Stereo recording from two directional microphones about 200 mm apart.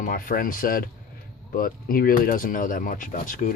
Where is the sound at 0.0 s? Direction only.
45° left (ahead or behind).